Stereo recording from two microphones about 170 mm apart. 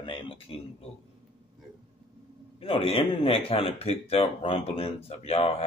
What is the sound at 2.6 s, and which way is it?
Speech, 35° left (ahead or behind).